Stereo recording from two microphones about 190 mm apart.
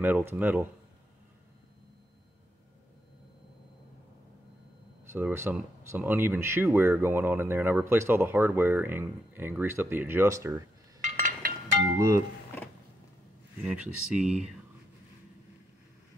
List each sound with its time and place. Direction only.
0.0 s speech: 10° right (ahead or behind)
5.1 s speech: 10° right (ahead or behind)
11.0 s chink: 40° right (ahead or behind)
13.7 s speech: 5° right (ahead or behind)